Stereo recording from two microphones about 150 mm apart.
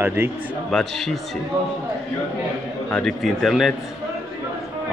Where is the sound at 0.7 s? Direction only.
5° left (ahead or behind).